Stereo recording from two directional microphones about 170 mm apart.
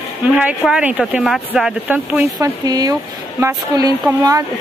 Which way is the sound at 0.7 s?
5° right (ahead or behind).